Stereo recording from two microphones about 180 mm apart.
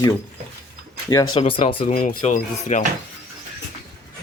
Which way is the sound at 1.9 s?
45° left (ahead or behind).